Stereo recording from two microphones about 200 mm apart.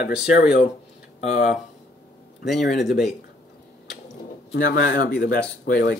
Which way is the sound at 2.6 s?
60° left (ahead or behind).